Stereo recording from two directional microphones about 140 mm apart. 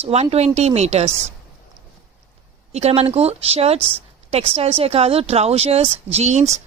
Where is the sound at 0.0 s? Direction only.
50° right (ahead or behind).